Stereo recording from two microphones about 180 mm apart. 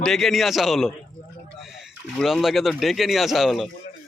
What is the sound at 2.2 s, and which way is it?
A man's voice, centre (ahead or behind).